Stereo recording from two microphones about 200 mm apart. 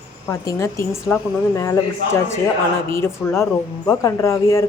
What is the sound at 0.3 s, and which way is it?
Speech, 15° left (ahead or behind).